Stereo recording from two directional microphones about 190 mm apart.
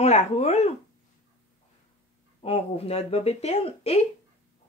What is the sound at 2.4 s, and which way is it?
Speech, 30° left (ahead or behind).